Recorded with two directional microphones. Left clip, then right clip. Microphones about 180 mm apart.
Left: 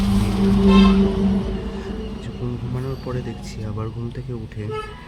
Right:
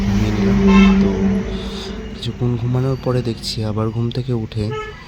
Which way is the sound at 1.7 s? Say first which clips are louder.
Right 2 dB; 25° right (ahead or behind).